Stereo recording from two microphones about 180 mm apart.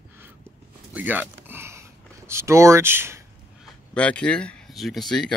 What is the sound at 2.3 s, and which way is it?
Speech, 15° right (ahead or behind).